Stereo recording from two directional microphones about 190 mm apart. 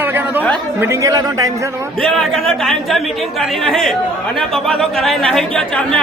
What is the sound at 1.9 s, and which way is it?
Speech, centre (ahead or behind).